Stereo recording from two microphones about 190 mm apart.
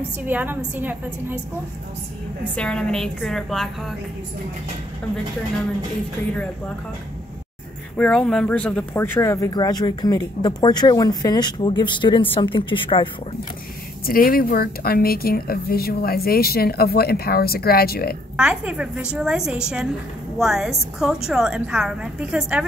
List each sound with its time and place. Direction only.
0.2 s a woman's voice: 10° right (ahead or behind)
2.5 s a woman's voice: 5° left (ahead or behind)
8.0 s speech: 5° left (ahead or behind); by 13.1 s 25° left (ahead or behind)
14.0 s speech: 50° left (ahead or behind)
18.3 s a woman's voice: 5° right (ahead or behind)